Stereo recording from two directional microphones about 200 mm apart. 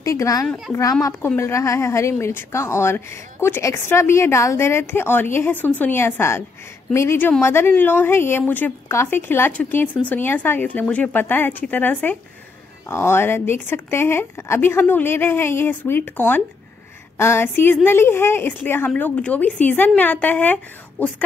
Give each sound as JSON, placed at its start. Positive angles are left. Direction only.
{"t": 0.0, "sound": "a woman's voice", "side_deg": 15}